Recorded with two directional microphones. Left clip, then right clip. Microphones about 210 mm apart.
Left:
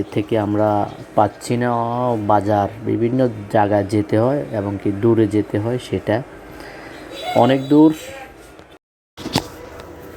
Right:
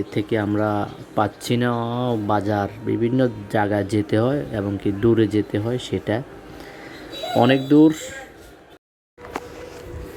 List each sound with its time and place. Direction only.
0.1 s speech: 10° right (ahead or behind)
7.3 s speech: 20° right (ahead or behind)